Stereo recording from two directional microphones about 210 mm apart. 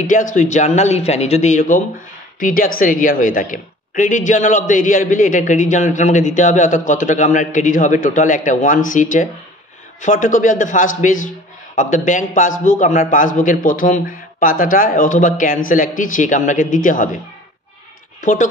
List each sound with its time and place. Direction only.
0.0 s a man's voice: 35° left (ahead or behind)
18.2 s speech: 40° left (ahead or behind)